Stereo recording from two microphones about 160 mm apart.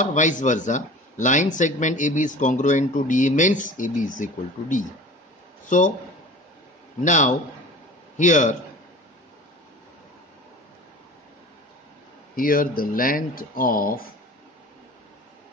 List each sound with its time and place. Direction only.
0.0 s speech: 50° left (ahead or behind)
7.1 s speech: 50° left (ahead or behind)
12.4 s speech: 65° left (ahead or behind)